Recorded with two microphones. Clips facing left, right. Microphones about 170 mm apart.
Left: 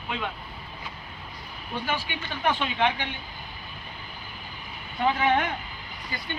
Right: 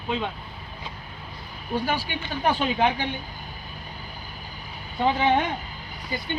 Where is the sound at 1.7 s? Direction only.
35° right (ahead or behind).